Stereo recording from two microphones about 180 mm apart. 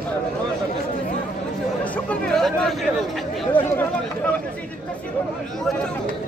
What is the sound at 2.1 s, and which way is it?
Speech, centre (ahead or behind).